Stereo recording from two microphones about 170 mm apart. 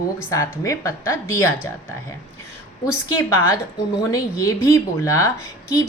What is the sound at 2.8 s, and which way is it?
A woman's voice, 15° left (ahead or behind).